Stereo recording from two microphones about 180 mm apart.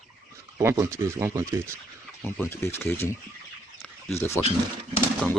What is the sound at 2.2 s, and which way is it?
Speech, 10° left (ahead or behind).